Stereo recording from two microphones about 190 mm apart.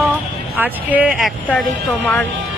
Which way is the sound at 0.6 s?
10° right (ahead or behind).